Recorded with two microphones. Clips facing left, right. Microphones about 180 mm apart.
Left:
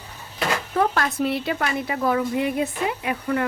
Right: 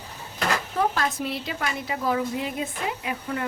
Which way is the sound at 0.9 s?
60° left (ahead or behind).